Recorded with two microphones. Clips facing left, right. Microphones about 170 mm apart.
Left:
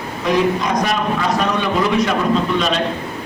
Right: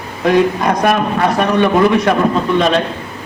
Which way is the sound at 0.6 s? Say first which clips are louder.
Right 5 dB; 55° right (ahead or behind).